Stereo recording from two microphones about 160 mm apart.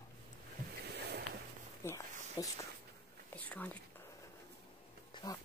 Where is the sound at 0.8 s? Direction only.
90° right.